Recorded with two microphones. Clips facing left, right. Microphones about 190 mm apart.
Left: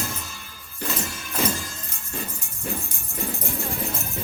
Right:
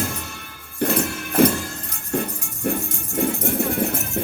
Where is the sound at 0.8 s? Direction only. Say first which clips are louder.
Right 9 dB; 60° right (ahead or behind).